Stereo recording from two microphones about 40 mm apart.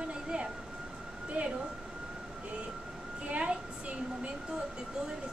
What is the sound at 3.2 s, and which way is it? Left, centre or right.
Speech, right.